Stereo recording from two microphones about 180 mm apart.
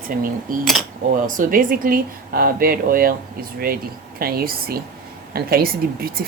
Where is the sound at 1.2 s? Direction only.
45° right (ahead or behind).